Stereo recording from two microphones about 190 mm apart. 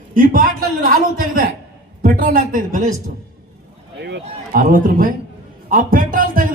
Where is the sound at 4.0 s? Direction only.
55° right (ahead or behind).